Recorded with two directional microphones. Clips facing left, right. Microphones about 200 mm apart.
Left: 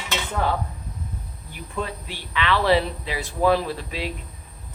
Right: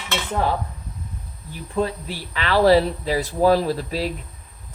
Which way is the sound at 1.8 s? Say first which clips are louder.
Right 7 dB; 40° right (ahead or behind).